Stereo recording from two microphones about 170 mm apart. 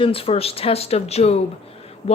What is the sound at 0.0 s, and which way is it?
Speech, 35° left (ahead or behind).